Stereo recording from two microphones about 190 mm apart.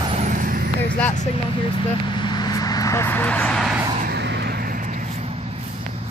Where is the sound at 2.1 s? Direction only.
20° left (ahead or behind).